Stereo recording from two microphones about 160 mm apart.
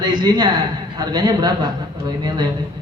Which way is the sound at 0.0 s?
25° right (ahead or behind).